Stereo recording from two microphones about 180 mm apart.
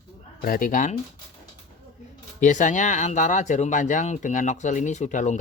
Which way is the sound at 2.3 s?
45° left (ahead or behind).